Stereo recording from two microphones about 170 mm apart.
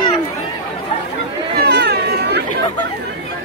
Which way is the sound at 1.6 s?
75° right (ahead or behind).